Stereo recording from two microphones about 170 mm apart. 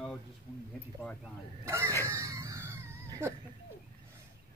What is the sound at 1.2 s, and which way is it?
Speech, 15° right (ahead or behind).